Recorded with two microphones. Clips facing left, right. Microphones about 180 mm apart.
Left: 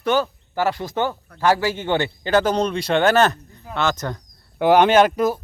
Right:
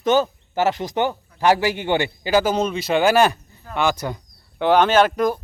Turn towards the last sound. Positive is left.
turn(degrees=10)  # may be behind; listen again after turning